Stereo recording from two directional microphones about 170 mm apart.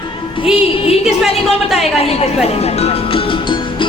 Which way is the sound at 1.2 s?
Centre (ahead or behind).